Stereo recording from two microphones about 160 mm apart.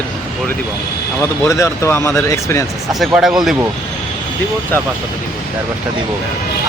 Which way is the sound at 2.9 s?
Centre (ahead or behind).